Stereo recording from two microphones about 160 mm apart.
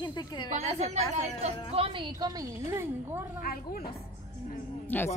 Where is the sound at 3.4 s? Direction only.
70° left (ahead or behind).